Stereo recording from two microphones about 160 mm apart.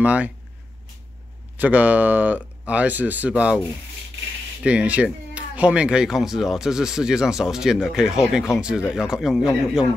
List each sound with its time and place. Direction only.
0.0 s speech: 10° right (ahead or behind)
1.6 s speech: 10° right (ahead or behind)
4.6 s speech: 10° right (ahead or behind)